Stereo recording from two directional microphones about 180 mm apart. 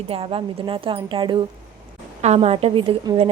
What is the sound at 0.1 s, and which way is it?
A woman's voice, 30° right (ahead or behind).